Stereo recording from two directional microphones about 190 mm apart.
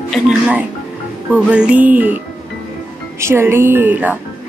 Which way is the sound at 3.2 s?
15° right (ahead or behind).